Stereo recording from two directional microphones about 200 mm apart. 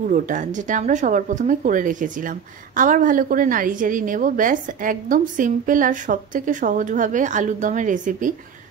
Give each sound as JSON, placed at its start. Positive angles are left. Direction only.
{"t": 0.1, "sound": "speech", "side_deg": -40}